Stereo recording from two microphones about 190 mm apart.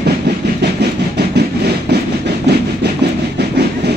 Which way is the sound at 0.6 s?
60° right (ahead or behind).